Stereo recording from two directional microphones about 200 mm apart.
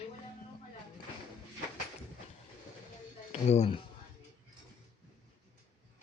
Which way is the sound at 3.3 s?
35° left (ahead or behind).